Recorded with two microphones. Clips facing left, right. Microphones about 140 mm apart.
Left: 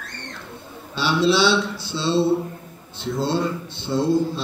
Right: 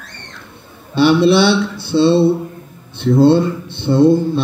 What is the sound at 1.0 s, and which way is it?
Speech, 60° right (ahead or behind).